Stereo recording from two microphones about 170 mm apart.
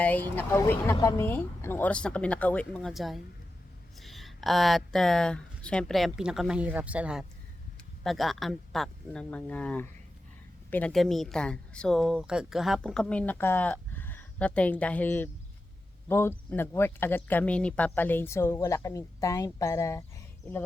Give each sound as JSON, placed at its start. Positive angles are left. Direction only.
{"t": 0.0, "sound": "speech", "side_deg": 10}